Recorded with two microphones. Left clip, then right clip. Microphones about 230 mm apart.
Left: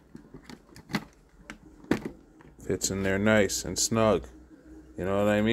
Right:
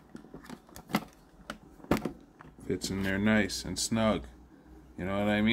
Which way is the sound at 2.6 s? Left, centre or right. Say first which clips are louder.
Left 4 dB; left.